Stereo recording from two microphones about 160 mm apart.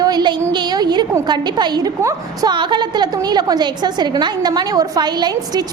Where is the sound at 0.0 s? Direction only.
25° right (ahead or behind).